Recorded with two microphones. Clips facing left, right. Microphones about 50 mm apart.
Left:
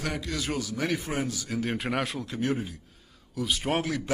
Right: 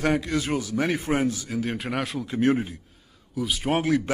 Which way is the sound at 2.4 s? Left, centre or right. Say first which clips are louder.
Right 7 dB; right.